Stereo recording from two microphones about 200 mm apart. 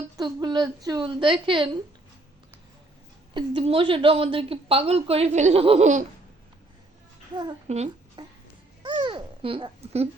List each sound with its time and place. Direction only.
0.2 s a woman's voice: 20° right (ahead or behind)
3.3 s a woman's voice: 25° right (ahead or behind)
7.7 s speech: 35° right (ahead or behind)
8.8 s babbling: 25° right (ahead or behind)